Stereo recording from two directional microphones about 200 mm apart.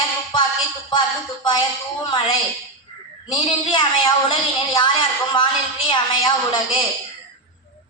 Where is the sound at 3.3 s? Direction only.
25° left (ahead or behind).